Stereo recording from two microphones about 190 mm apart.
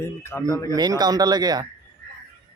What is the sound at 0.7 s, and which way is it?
Speech, 20° right (ahead or behind).